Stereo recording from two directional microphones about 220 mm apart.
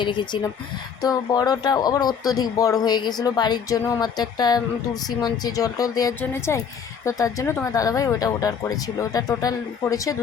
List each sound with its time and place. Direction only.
0.0 s speech: 20° left (ahead or behind)